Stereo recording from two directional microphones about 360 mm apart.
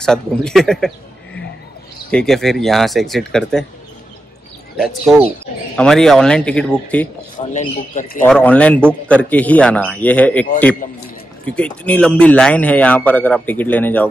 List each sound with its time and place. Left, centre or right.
0.0 s a man's voice: centre
4.7 s a man's voice: centre
7.5 s speech: centre
8.2 s a man's voice: centre
11.4 s a man's voice: centre